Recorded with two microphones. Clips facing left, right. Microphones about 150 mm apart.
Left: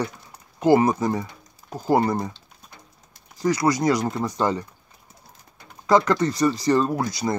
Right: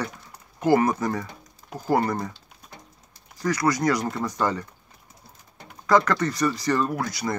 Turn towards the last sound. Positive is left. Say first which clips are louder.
# left 3 dB
turn(degrees=25)  # may be behind; listen again after turning